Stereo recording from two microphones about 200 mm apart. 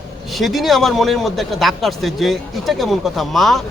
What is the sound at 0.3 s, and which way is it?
A man's voice, centre (ahead or behind).